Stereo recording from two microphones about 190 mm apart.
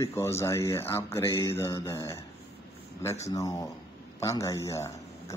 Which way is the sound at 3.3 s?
15° left (ahead or behind).